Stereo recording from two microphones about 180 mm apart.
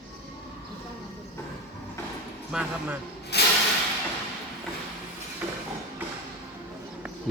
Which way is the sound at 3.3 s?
65° left (ahead or behind).